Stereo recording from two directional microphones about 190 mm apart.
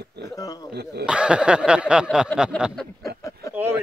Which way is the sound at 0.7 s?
60° right (ahead or behind).